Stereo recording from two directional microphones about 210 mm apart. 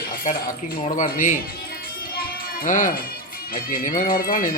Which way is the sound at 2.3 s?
40° left (ahead or behind).